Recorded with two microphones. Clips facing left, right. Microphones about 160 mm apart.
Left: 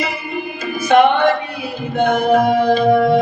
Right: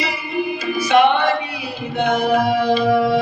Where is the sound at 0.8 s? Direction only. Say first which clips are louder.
Left 3 dB; 50° left (ahead or behind).